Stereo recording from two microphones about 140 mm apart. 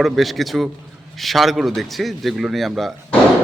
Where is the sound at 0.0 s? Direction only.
Centre (ahead or behind).